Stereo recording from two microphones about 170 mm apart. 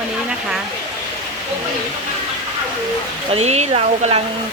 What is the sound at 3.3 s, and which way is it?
Speech, 40° right (ahead or behind).